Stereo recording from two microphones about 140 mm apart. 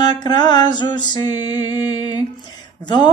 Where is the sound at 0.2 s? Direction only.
30° left (ahead or behind).